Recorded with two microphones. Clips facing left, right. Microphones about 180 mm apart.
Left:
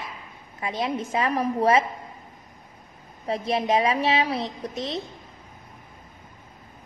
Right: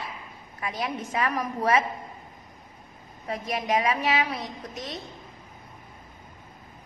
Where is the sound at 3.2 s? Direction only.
30° left (ahead or behind).